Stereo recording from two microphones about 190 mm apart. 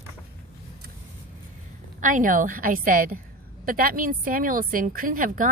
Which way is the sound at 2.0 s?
45° right (ahead or behind).